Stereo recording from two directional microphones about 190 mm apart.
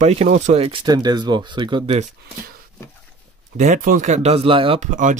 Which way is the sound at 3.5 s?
45° right (ahead or behind).